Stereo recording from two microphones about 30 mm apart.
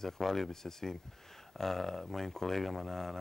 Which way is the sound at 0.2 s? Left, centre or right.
Centre.